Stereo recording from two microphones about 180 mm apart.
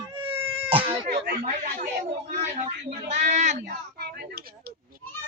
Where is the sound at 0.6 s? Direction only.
30° right (ahead or behind).